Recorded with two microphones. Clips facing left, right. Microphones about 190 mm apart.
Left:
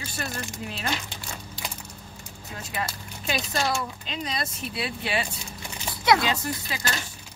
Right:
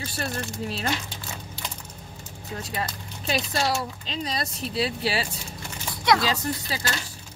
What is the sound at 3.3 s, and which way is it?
Speech, 35° right (ahead or behind).